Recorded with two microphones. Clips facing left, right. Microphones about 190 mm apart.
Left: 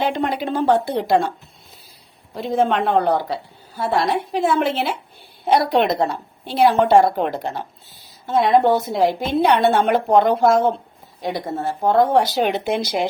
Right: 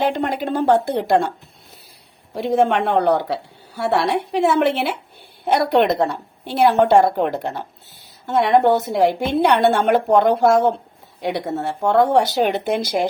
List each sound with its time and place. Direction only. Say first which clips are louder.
0.0 s speech: right 1 dB; 50° right (ahead or behind)
2.3 s a woman's voice: right 2 dB; 65° right (ahead or behind)
6.4 s a woman's voice: right 1 dB; 50° right (ahead or behind)
12.3 s speech: right 1 dB; 45° right (ahead or behind)